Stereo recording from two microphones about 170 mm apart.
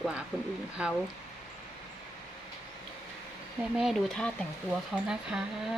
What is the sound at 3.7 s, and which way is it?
Speech, centre (ahead or behind).